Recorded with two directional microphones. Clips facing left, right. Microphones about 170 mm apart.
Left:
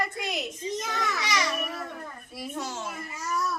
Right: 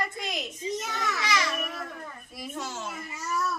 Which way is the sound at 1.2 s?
15° left (ahead or behind).